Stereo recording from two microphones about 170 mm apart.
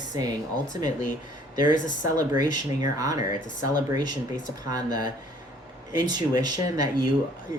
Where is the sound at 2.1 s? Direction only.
20° right (ahead or behind).